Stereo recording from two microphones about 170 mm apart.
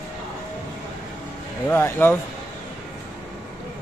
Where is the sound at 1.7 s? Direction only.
15° left (ahead or behind).